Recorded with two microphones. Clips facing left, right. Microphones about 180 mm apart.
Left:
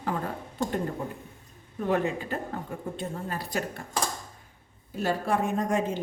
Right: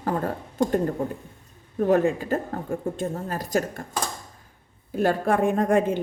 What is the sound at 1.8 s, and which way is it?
A woman's voice, 45° right (ahead or behind).